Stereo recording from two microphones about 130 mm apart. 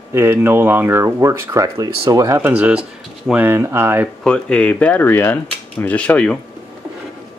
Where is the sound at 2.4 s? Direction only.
10° right (ahead or behind).